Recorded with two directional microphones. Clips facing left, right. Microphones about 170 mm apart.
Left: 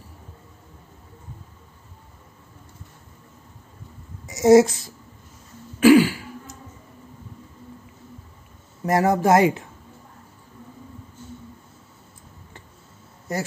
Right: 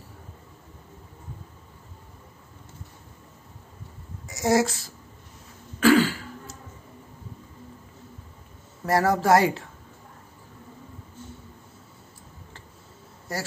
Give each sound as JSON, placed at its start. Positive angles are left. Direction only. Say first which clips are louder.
{"t": 4.3, "sound": "speech", "louder": "left 9 dB", "side_deg": 20}
{"t": 5.8, "sound": "throat clearing", "louder": "left 5 dB", "side_deg": 15}
{"t": 8.8, "sound": "speech", "louder": "left 3 dB", "side_deg": 20}
{"t": 13.3, "sound": "speech", "louder": "left 5 dB", "side_deg": 20}